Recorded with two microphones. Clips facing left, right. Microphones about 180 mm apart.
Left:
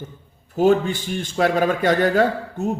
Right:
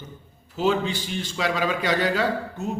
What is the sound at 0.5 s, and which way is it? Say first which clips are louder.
Speech: left 6 dB; 50° left (ahead or behind).